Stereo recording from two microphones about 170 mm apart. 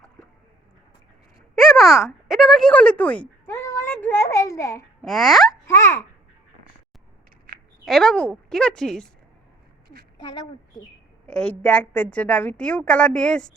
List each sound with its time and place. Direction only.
1.5 s a child's voice: centre (ahead or behind); by 4.8 s 15° left (ahead or behind)
5.0 s speech: centre (ahead or behind)
5.6 s a woman's voice: 15° left (ahead or behind)
7.5 s a sound: 60° right (ahead or behind)
7.9 s speech: centre (ahead or behind)
11.4 s a woman's voice: 5° left (ahead or behind)